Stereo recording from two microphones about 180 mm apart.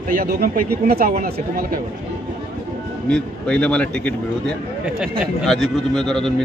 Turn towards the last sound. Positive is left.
turn(degrees=0)  # may be behind; listen again after turning